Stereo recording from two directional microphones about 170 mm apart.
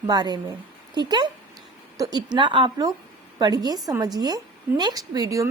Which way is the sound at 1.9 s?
20° right (ahead or behind).